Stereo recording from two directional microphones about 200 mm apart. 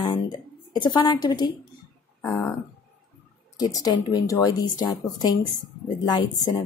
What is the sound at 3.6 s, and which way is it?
Speech, 20° left (ahead or behind).